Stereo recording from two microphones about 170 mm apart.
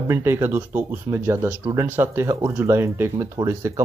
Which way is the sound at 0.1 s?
15° right (ahead or behind).